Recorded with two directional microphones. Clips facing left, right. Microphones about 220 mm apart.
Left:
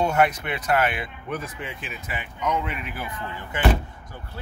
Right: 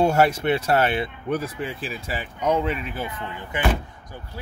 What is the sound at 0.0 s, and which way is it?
Speech, 30° right (ahead or behind).